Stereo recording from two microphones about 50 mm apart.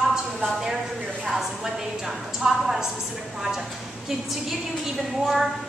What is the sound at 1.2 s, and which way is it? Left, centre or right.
A woman's voice, centre.